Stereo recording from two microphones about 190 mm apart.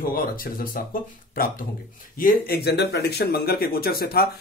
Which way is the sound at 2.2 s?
50° left (ahead or behind).